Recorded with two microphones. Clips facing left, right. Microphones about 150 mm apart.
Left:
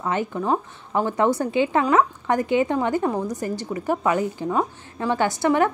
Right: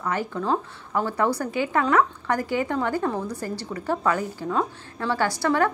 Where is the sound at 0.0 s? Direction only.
20° left (ahead or behind).